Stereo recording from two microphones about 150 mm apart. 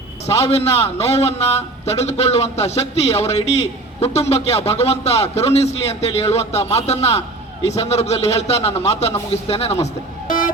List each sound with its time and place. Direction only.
0.3 s a man's voice: 45° left (ahead or behind)
10.2 s music: 65° left (ahead or behind)